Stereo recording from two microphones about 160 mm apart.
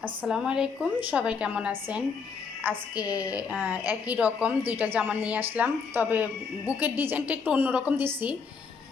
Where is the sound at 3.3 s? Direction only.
5° right (ahead or behind).